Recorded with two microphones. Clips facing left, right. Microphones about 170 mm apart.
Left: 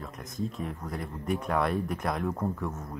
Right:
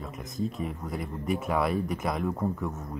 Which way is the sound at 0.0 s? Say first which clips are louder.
Right 2 dB; centre (ahead or behind).